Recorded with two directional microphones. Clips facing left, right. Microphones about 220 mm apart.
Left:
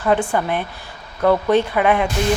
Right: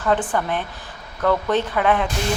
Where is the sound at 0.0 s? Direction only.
10° left (ahead or behind).